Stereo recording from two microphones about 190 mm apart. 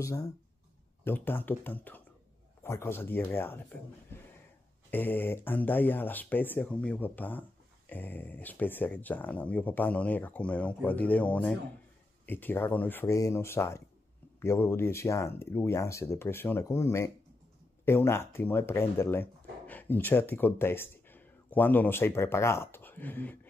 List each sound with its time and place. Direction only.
0.0 s speech: 20° left (ahead or behind)
4.9 s speech: 10° left (ahead or behind)